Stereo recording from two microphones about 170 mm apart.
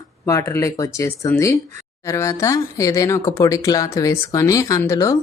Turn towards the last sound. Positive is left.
turn(degrees=15)  # may be behind; listen again after turning